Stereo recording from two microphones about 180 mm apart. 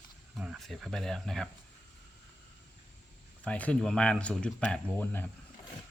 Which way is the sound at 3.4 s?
5° left (ahead or behind).